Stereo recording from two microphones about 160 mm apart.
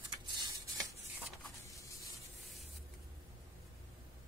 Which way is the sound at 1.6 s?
20° left (ahead or behind).